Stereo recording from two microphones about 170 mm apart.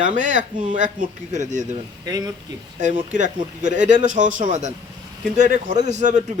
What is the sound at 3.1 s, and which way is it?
Speech, 45° right (ahead or behind).